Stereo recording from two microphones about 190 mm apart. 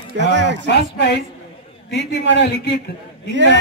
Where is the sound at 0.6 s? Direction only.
65° left (ahead or behind).